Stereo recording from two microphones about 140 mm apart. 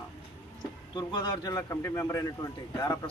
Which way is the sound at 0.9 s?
30° left (ahead or behind).